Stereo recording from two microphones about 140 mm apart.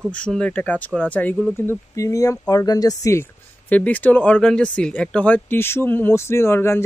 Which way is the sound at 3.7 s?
10° left (ahead or behind).